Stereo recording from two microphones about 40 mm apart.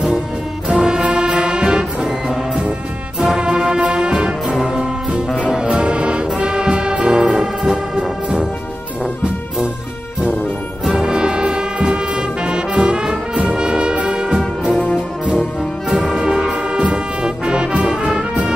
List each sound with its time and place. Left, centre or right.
0.7 s music: right
5.6 s brass instrument: right
10.9 s brass instrument: centre
13.5 s music: centre
15.9 s brass instrument: centre
16.9 s music: centre